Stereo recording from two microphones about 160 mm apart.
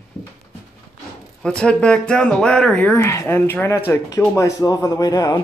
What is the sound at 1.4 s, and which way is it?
Speech, 5° left (ahead or behind).